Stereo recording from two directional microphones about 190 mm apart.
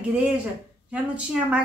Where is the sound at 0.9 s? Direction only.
5° right (ahead or behind).